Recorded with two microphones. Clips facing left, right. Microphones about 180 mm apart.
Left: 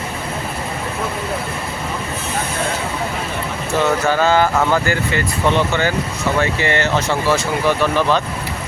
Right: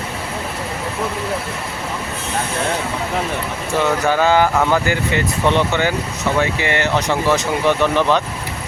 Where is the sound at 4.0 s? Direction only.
15° right (ahead or behind).